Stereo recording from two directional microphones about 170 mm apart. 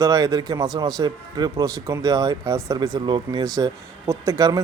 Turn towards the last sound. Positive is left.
turn(degrees=-20)  # may be behind; listen again after turning